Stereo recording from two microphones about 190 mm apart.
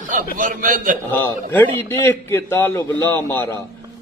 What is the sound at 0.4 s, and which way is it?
Speech, 40° right (ahead or behind).